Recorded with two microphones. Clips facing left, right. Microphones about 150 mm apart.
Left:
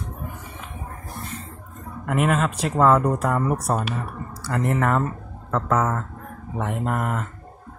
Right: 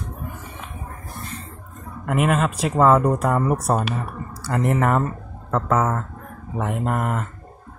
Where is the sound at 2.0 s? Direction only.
5° right (ahead or behind).